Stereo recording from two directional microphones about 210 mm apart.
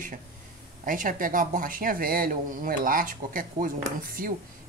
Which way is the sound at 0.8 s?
40° right (ahead or behind).